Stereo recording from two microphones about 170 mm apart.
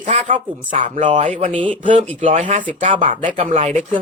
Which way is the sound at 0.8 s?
45° right (ahead or behind).